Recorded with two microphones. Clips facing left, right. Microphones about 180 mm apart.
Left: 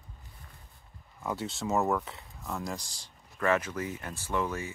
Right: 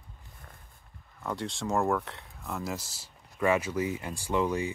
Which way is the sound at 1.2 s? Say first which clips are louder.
Even; 5° left (ahead or behind).